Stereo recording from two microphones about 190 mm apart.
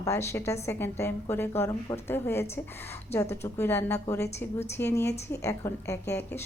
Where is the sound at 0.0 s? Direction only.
15° left (ahead or behind).